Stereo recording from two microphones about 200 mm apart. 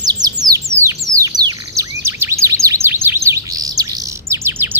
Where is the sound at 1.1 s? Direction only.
15° right (ahead or behind).